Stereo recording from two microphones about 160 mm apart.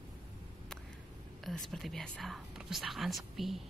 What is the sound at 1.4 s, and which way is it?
Mantra, centre (ahead or behind).